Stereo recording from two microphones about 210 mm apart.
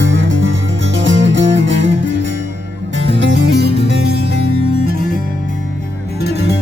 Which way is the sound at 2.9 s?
55° right (ahead or behind).